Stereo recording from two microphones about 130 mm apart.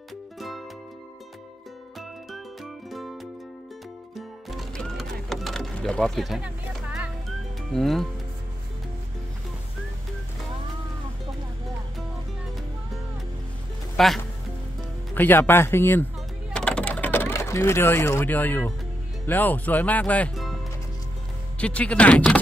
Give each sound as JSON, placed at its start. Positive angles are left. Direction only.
{"t": 0.4, "sound": "music", "side_deg": 0}
{"t": 2.0, "sound": "music", "side_deg": 0}
{"t": 4.1, "sound": "music", "side_deg": 0}
{"t": 13.9, "sound": "speech", "side_deg": 0}
{"t": 15.1, "sound": "speech", "side_deg": 15}
{"t": 16.5, "sound": "mechanisms", "side_deg": 10}
{"t": 19.2, "sound": "speech", "side_deg": 15}
{"t": 21.5, "sound": "speech", "side_deg": 10}